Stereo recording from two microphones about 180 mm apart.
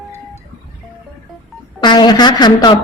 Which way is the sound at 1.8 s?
25° left (ahead or behind).